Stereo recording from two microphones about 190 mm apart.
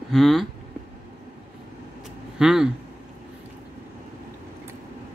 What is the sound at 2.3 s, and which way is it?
Speech, 5° right (ahead or behind).